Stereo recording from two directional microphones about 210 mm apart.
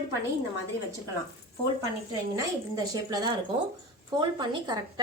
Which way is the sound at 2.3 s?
15° right (ahead or behind).